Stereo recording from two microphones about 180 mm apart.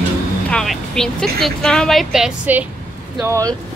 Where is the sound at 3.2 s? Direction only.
20° right (ahead or behind).